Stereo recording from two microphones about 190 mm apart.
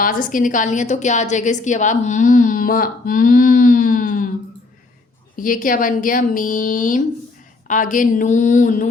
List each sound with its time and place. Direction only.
0.0 s a woman's voice: 45° left (ahead or behind)
5.4 s a woman's voice: 45° left (ahead or behind)